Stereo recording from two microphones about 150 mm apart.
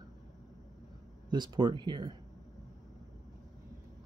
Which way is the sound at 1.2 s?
30° right (ahead or behind).